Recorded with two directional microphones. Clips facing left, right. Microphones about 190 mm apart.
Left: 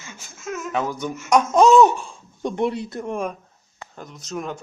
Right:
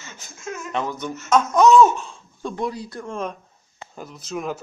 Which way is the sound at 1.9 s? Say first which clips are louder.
Even; 15° left (ahead or behind).